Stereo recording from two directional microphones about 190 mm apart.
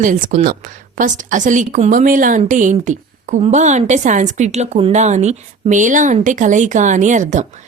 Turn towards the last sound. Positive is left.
turn(degrees=-40)  # may be behind; listen again after turning